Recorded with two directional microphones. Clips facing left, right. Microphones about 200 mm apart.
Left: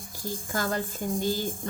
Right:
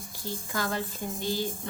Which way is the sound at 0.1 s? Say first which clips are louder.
Left 3 dB; 45° left (ahead or behind).